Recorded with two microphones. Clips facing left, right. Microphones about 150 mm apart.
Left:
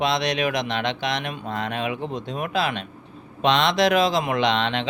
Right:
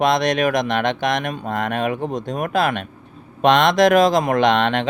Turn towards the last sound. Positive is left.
turn(degrees=-50)  # may be behind; listen again after turning